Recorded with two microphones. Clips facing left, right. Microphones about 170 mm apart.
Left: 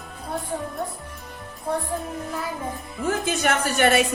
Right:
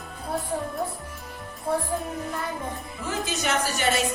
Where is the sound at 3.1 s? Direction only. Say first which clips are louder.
Left 5 dB; 55° left (ahead or behind).